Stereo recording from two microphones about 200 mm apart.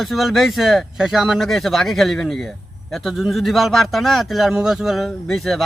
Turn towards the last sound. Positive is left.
turn(degrees=0)  # may be behind; listen again after turning